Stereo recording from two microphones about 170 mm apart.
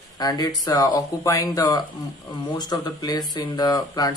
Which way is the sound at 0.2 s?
20° left (ahead or behind).